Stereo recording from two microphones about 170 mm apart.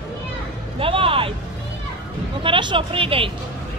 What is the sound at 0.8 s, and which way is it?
Speech, 30° right (ahead or behind).